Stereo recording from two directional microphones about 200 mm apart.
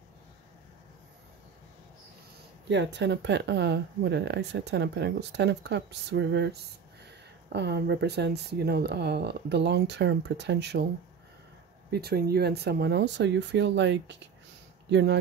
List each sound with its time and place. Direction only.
2.7 s speech: 60° right (ahead or behind)
11.9 s speech: 50° right (ahead or behind)